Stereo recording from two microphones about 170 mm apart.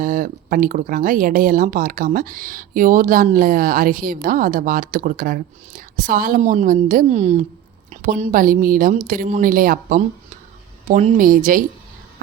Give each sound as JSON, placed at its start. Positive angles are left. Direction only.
{"t": 0.0, "sound": "a woman's voice", "side_deg": -50}